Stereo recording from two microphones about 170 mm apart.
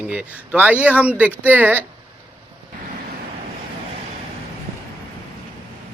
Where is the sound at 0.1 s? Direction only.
10° right (ahead or behind).